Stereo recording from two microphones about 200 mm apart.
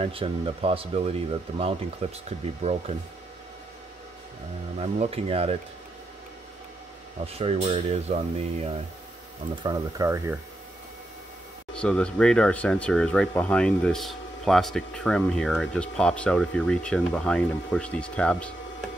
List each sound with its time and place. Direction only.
0.0 s speech: 25° right (ahead or behind)
4.7 s speech: 30° right (ahead or behind)
7.2 s speech: 30° right (ahead or behind)
9.6 s speech: 20° right (ahead or behind)
11.7 s speech: 5° left (ahead or behind)